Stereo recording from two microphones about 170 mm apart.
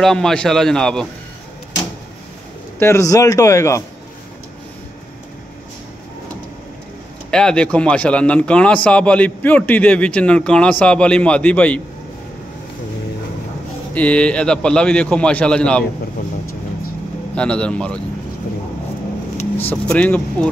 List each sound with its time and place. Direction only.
0.0 s a man's voice: 5° left (ahead or behind)
2.8 s a man's voice: 15° left (ahead or behind)
7.2 s a man's voice: 5° left (ahead or behind)
13.9 s a man's voice: 5° left (ahead or behind)
17.4 s a man's voice: 5° left (ahead or behind)
19.6 s a man's voice: 10° left (ahead or behind)